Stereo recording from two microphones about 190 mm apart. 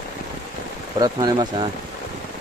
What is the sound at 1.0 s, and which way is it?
Speech, 20° right (ahead or behind).